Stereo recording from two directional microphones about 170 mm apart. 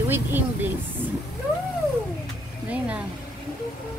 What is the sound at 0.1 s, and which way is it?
Speech, 10° right (ahead or behind).